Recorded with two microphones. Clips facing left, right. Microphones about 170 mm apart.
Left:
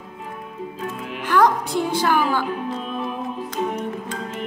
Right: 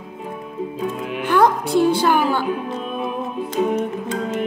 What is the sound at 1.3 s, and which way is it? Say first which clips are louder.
A woman's voice: right 2 dB; 30° right (ahead or behind).